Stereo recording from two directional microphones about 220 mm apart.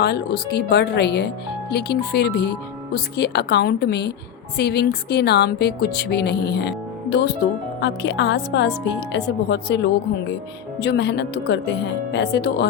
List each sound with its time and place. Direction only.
0.0 s speech: 45° left (ahead or behind)
7.8 s speech: 55° left (ahead or behind)